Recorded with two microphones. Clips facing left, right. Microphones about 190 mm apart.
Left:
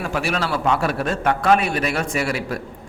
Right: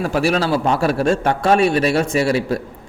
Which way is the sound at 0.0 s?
35° right (ahead or behind).